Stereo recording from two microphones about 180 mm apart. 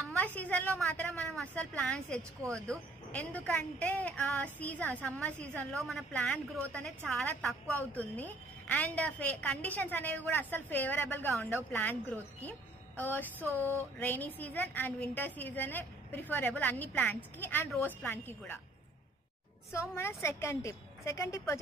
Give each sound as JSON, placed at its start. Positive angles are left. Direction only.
{"t": 0.1, "sound": "a woman's voice", "side_deg": 10}
{"t": 13.4, "sound": "a sound", "side_deg": -15}
{"t": 13.9, "sound": "a woman's voice", "side_deg": 10}
{"t": 19.7, "sound": "a woman's voice", "side_deg": 15}